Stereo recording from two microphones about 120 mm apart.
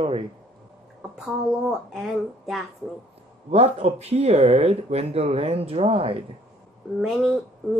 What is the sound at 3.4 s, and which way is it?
Speech, 60° right (ahead or behind).